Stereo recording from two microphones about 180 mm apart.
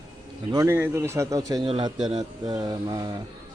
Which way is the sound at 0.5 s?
15° right (ahead or behind).